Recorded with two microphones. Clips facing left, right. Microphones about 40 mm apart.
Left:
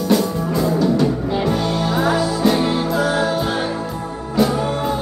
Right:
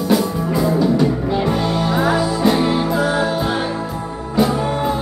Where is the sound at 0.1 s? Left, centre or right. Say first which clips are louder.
Right 1 dB; centre.